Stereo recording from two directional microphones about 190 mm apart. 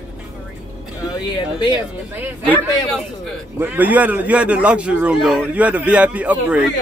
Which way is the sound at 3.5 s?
10° right (ahead or behind).